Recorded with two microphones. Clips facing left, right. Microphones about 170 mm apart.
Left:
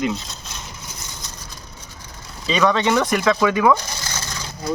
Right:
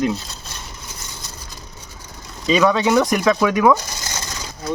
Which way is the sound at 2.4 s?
10° right (ahead or behind).